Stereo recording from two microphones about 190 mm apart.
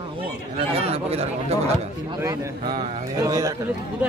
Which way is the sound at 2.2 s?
15° right (ahead or behind).